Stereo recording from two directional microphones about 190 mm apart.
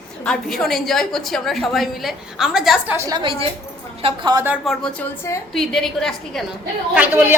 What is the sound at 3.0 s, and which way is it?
A woman's voice, 20° right (ahead or behind).